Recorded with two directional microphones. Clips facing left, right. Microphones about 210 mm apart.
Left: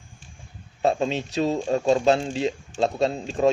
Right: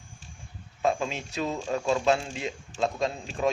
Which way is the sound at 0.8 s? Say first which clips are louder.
Left 5 dB; 35° left (ahead or behind).